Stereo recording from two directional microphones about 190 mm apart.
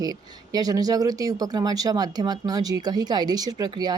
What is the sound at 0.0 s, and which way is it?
Speech, 20° right (ahead or behind).